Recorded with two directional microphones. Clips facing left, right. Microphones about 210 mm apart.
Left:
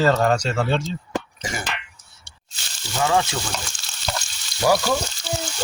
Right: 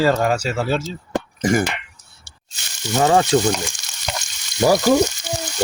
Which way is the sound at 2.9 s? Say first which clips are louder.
Right 5 dB; 40° right (ahead or behind).